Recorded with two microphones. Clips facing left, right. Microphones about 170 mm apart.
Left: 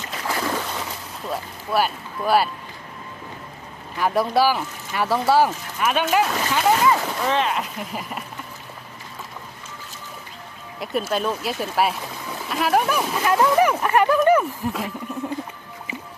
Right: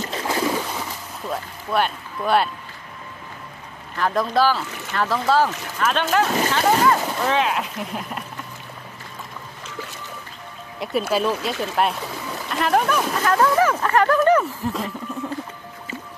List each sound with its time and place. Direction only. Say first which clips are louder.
0.0 s a sound: right 3 dB; 30° right (ahead or behind)
1.3 s speech: even; 5° left (ahead or behind)
3.9 s speech: left 1 dB; 10° left (ahead or behind)
10.8 s speech: right 2 dB; centre (ahead or behind)